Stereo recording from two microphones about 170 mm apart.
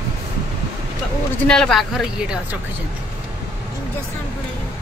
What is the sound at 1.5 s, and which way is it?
A woman's voice, 5° left (ahead or behind).